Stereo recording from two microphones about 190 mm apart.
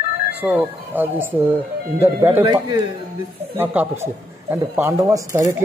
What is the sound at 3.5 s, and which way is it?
A man's voice, 10° right (ahead or behind).